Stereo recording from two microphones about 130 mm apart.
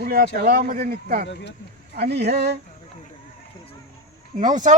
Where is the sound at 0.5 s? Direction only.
90° right.